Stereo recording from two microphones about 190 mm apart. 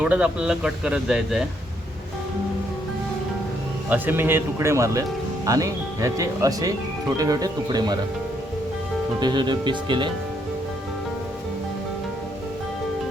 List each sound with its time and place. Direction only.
0.0 s speech: 5° right (ahead or behind)
3.8 s speech: 10° right (ahead or behind)
9.2 s speech: 25° right (ahead or behind)